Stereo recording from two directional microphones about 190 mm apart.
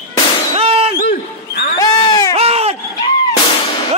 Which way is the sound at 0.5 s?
30° right (ahead or behind).